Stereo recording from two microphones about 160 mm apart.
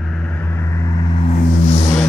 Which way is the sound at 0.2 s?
10° left (ahead or behind).